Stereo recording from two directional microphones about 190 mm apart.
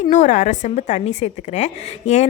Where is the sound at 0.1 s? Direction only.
40° left (ahead or behind).